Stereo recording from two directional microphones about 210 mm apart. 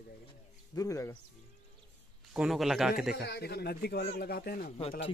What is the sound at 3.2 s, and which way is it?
Speech, 50° left (ahead or behind).